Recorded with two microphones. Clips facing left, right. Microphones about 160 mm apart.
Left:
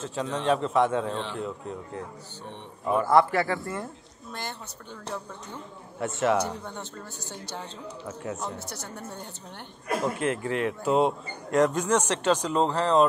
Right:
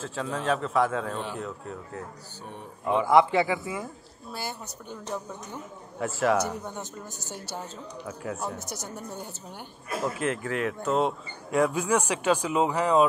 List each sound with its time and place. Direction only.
0.0 s a man's voice: centre (ahead or behind)
3.0 s speech: 20° right (ahead or behind)
3.5 s a man's voice: 5° right (ahead or behind)
5.9 s a man's voice: centre (ahead or behind)
6.4 s a man's voice: 10° right (ahead or behind)